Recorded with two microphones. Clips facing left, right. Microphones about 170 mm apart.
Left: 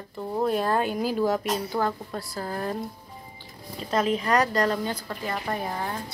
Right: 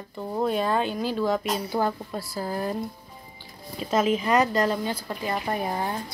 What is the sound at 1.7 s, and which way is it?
Speech, 10° right (ahead or behind).